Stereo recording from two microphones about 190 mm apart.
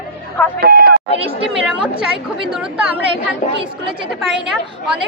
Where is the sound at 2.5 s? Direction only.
5° right (ahead or behind).